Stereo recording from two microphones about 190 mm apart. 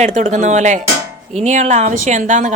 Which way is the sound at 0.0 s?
40° right (ahead or behind).